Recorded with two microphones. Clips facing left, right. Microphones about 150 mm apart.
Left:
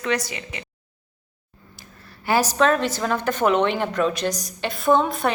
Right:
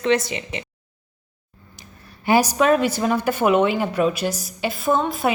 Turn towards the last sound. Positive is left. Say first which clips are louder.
# left 1 dB
turn(degrees=-5)  # may be behind; listen again after turning